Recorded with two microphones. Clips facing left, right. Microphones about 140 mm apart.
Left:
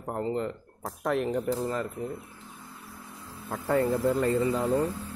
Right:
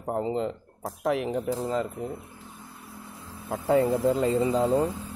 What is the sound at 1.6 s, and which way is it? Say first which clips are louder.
Speech: right 2 dB; 20° right (ahead or behind).